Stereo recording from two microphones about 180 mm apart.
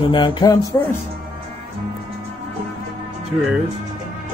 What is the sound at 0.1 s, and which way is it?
Music, 25° left (ahead or behind).